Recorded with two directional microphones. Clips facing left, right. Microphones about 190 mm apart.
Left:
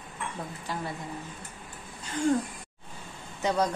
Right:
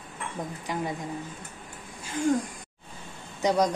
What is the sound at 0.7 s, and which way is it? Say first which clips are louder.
Speech: right 4 dB; 15° right (ahead or behind).